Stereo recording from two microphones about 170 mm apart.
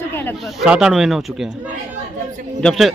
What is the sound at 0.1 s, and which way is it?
Speech, 10° left (ahead or behind).